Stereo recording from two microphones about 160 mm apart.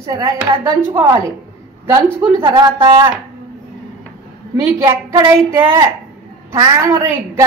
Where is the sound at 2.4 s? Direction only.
30° right (ahead or behind).